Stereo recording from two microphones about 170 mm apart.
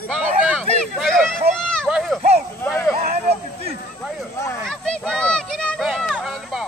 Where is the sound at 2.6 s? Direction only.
10° left (ahead or behind).